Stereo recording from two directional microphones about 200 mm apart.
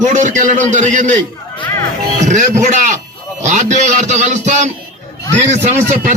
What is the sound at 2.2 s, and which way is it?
A man's voice, 35° right (ahead or behind).